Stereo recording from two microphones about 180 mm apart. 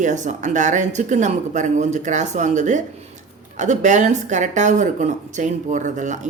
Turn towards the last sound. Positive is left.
turn(degrees=-45)  # may be behind; listen again after turning